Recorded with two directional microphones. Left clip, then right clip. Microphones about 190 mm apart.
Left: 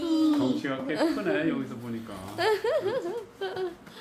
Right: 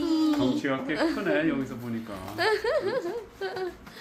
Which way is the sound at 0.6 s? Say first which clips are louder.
Right 2 dB; 50° right (ahead or behind).